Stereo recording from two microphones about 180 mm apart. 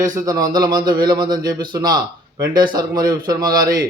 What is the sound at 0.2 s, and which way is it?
A man's voice, 20° right (ahead or behind).